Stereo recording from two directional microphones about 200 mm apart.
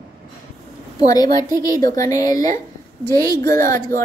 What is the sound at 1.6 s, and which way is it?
A woman's voice, 20° left (ahead or behind).